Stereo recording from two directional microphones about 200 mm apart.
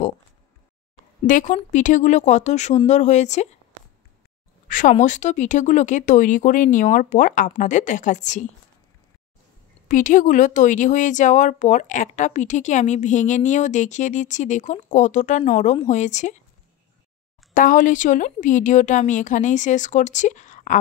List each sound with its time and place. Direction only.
1.2 s speech: 40° left (ahead or behind)
4.6 s speech: 40° left (ahead or behind)
9.8 s speech: 40° left (ahead or behind)
17.6 s speech: 40° left (ahead or behind)